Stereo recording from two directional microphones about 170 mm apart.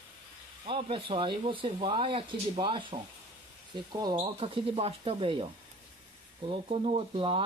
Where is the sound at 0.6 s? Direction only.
30° right (ahead or behind).